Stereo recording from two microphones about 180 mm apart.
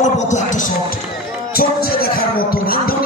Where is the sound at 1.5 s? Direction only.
55° left (ahead or behind).